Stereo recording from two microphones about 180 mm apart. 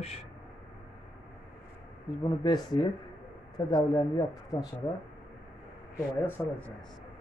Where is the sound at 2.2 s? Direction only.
25° left (ahead or behind).